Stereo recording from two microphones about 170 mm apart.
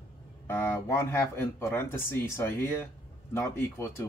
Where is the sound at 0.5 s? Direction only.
15° left (ahead or behind).